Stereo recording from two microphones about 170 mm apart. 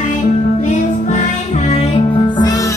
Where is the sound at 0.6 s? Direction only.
45° left (ahead or behind).